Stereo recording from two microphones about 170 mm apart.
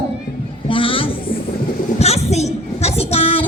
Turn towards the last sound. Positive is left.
turn(degrees=35)  # may be behind; listen again after turning